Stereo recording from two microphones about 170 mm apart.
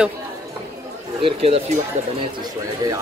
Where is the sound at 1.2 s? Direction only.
35° right (ahead or behind).